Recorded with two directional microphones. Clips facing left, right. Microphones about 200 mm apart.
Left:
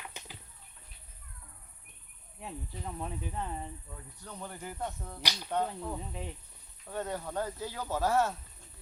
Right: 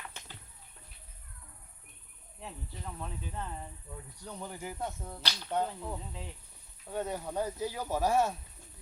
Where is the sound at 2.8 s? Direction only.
15° left (ahead or behind).